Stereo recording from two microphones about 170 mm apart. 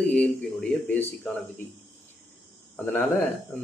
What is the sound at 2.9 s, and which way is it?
Speech, 10° left (ahead or behind).